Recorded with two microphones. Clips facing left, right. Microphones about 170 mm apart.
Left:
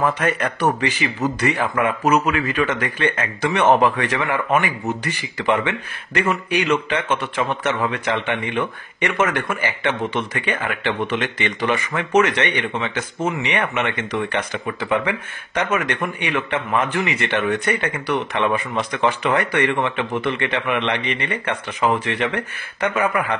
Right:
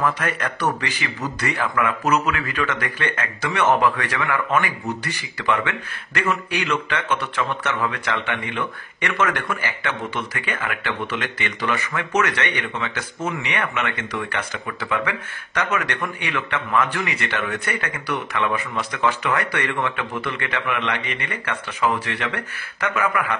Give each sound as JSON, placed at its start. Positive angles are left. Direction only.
{"t": 0.0, "sound": "speech", "side_deg": 30}
{"t": 0.6, "sound": "speech", "side_deg": 15}
{"t": 1.8, "sound": "speech", "side_deg": 25}